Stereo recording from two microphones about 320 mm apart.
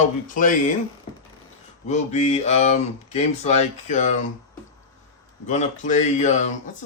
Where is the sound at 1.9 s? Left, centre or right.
Left.